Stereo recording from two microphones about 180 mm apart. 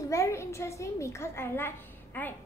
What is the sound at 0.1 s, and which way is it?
A woman's voice, 15° left (ahead or behind).